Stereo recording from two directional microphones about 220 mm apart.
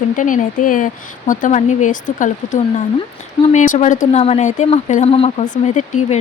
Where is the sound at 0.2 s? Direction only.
35° left (ahead or behind).